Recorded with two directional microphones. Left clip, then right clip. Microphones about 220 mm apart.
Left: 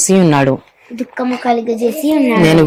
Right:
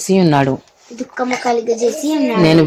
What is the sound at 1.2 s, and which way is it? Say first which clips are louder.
Speech: left 1 dB; 15° left (ahead or behind).